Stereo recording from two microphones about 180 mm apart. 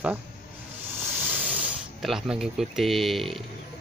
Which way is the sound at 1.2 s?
5° right (ahead or behind).